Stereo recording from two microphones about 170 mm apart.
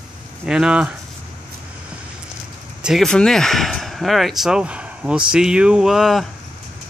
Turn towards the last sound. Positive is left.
turn(degrees=0)  # may be behind; listen again after turning